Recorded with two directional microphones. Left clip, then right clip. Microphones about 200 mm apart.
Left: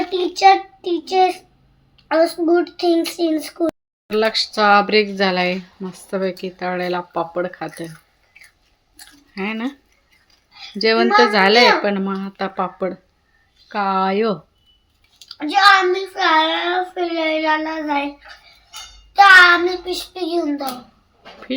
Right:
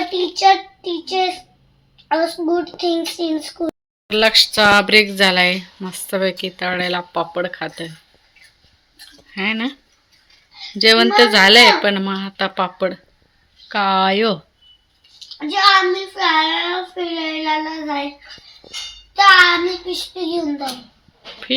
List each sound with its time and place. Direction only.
0.1 s a child's voice: 15° left (ahead or behind)
3.7 s speech: 5° right (ahead or behind)
9.3 s speech: centre (ahead or behind)
10.8 s speech: centre (ahead or behind)
15.4 s child singing: 15° left (ahead or behind)
16.9 s a child's voice: 20° left (ahead or behind)
19.1 s a child's voice: 20° left (ahead or behind)